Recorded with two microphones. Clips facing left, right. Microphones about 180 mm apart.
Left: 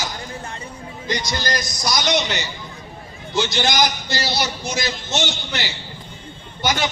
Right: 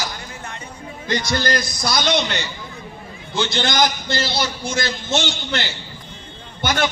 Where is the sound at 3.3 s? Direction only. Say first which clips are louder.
Even; 55° right (ahead or behind).